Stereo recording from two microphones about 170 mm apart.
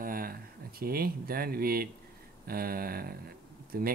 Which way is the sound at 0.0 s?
60° right (ahead or behind).